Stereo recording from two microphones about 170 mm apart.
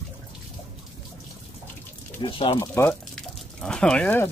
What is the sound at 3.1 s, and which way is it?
Drip, 5° left (ahead or behind).